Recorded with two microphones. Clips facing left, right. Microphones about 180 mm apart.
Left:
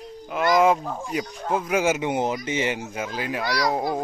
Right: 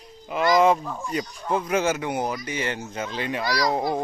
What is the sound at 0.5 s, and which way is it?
A man's voice, 5° left (ahead or behind).